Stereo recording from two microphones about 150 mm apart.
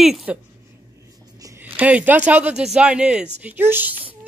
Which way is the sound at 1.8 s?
10° right (ahead or behind).